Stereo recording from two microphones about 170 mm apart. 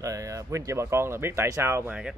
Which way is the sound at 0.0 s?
20° right (ahead or behind).